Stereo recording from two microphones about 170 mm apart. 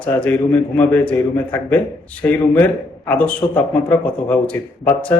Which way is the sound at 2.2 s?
10° left (ahead or behind).